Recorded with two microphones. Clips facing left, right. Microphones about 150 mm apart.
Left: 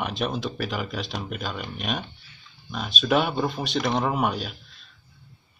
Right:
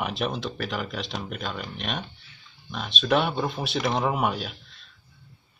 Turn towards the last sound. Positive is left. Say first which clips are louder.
# left 1 dB
turn(degrees=0)  # may be behind; listen again after turning